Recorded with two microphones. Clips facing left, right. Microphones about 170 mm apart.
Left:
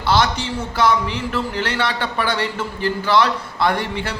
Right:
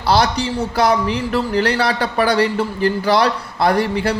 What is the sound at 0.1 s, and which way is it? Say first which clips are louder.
A man's voice: right 3 dB; 35° right (ahead or behind).